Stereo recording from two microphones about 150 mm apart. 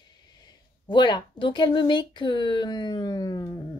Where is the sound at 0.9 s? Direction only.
30° left (ahead or behind).